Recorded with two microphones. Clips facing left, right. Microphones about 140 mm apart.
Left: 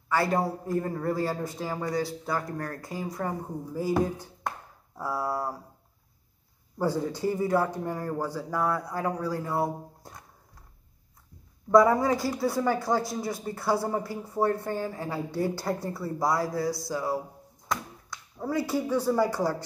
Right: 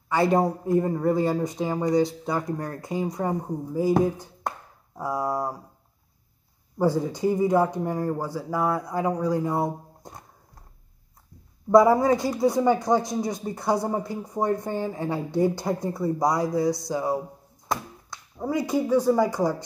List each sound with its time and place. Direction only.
0.1 s speech: 20° right (ahead or behind)
6.8 s speech: 15° right (ahead or behind)
11.8 s speech: 25° right (ahead or behind)
18.4 s speech: 15° right (ahead or behind)